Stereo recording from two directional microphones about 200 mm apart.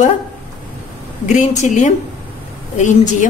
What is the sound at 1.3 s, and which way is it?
A woman's voice, 35° left (ahead or behind).